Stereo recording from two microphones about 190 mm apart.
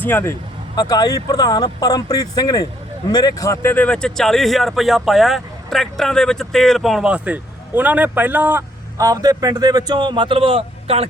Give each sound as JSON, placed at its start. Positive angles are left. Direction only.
{"t": 0.0, "sound": "speech", "side_deg": 10}